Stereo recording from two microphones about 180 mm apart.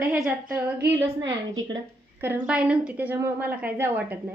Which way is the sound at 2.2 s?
10° right (ahead or behind).